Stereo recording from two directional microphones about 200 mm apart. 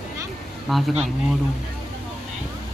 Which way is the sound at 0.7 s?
Centre (ahead or behind).